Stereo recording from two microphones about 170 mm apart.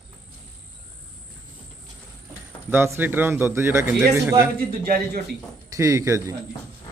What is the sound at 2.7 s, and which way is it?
A man's voice, 15° right (ahead or behind).